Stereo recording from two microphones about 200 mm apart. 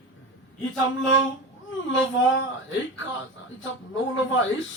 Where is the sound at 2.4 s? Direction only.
70° left (ahead or behind).